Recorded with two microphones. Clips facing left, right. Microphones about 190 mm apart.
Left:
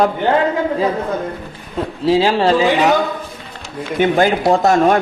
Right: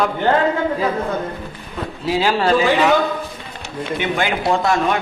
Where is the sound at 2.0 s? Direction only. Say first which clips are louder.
Left 4 dB; 30° left (ahead or behind).